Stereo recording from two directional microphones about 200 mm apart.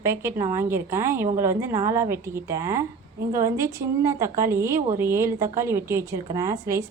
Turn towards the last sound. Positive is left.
turn(degrees=-15)  # may be behind; listen again after turning